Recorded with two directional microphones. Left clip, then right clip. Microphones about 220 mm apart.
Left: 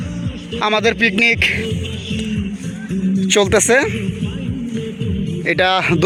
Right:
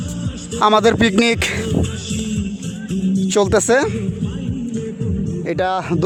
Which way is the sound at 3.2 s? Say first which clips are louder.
Left 2 dB; 5° right (ahead or behind).